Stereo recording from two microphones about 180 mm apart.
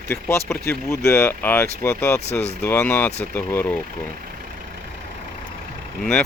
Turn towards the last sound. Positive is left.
turn(degrees=5)  # may be behind; listen again after turning